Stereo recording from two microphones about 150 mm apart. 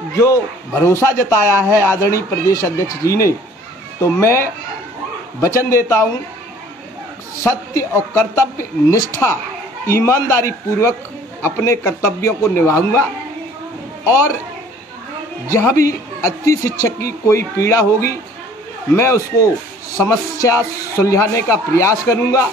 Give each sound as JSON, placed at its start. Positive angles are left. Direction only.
{"t": 0.2, "sound": "a man's voice", "side_deg": 20}
{"t": 5.7, "sound": "a man's voice", "side_deg": 20}
{"t": 7.4, "sound": "a woman's voice", "side_deg": 20}
{"t": 15.4, "sound": "a man's voice", "side_deg": 20}